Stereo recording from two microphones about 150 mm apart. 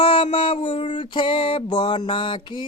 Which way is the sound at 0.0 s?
35° left (ahead or behind).